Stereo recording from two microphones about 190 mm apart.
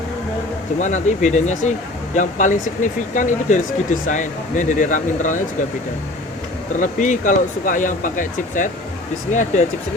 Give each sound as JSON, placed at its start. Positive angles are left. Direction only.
{"t": 0.8, "sound": "speech", "side_deg": 40}
{"t": 6.7, "sound": "speech", "side_deg": 40}